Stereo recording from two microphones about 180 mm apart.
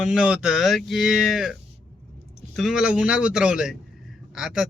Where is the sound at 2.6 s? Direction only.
Centre (ahead or behind).